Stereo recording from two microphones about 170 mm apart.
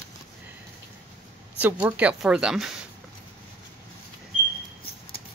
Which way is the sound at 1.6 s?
10° right (ahead or behind).